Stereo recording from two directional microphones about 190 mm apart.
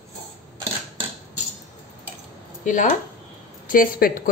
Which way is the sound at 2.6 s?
40° left (ahead or behind).